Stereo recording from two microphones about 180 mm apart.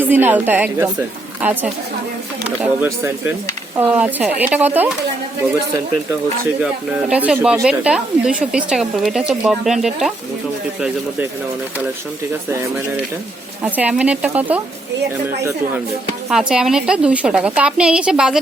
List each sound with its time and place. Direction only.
0.0 s speech: 10° right (ahead or behind)
7.1 s speech: 10° right (ahead or behind)
12.5 s speech: 15° right (ahead or behind)
16.3 s speech: 5° right (ahead or behind)